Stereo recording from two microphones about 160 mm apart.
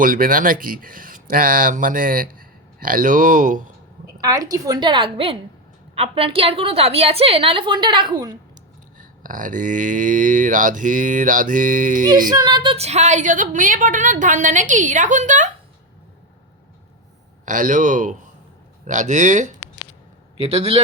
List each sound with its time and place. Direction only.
0.0 s speech: 60° right (ahead or behind)
4.2 s a woman's voice: 20° right (ahead or behind)
9.0 s speech: 55° right (ahead or behind)
12.3 s a woman's voice: 25° right (ahead or behind)
12.7 s a woman's voice: 45° right (ahead or behind)
17.4 s a woman's voice: 55° right (ahead or behind)
20.3 s a woman's voice: 40° right (ahead or behind)